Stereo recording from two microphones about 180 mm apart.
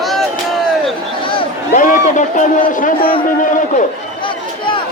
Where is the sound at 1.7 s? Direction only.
50° left (ahead or behind).